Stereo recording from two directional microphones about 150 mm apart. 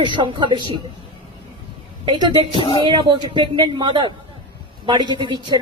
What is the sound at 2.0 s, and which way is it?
Speech, 30° right (ahead or behind).